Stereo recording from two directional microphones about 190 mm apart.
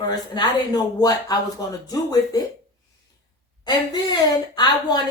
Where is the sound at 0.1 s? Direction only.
20° left (ahead or behind).